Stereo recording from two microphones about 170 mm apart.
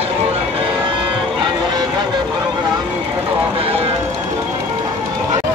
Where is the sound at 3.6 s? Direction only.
35° right (ahead or behind).